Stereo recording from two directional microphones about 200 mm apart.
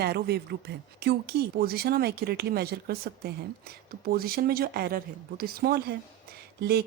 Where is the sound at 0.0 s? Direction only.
55° right (ahead or behind).